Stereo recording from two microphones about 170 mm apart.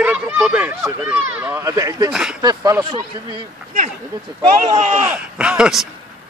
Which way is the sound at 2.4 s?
25° right (ahead or behind).